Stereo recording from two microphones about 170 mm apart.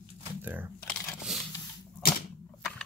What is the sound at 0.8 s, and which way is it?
Crumpling, centre (ahead or behind).